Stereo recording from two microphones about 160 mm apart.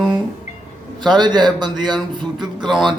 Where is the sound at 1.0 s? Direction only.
25° right (ahead or behind).